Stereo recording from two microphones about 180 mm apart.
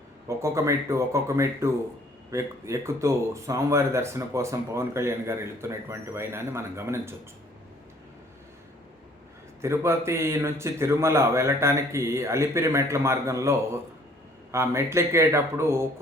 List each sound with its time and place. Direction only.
0.3 s speech: 15° right (ahead or behind)
9.6 s speech: 15° right (ahead or behind)